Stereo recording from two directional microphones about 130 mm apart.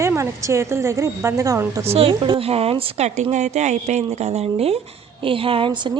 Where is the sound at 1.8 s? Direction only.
50° right (ahead or behind).